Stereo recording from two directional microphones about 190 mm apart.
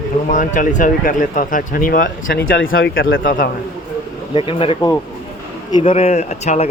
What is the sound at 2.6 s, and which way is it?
Speech, 85° left.